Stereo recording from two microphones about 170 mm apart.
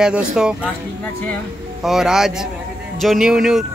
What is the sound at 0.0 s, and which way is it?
Speech, 5° right (ahead or behind).